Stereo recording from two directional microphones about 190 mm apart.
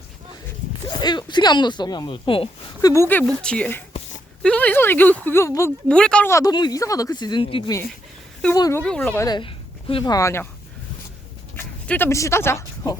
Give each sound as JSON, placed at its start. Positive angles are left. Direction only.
{"t": 0.9, "sound": "speech", "side_deg": 25}
{"t": 2.9, "sound": "speech", "side_deg": 10}
{"t": 8.8, "sound": "speech", "side_deg": 5}
{"t": 11.5, "sound": "speech", "side_deg": 10}